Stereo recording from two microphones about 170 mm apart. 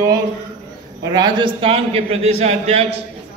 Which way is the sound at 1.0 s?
25° right (ahead or behind).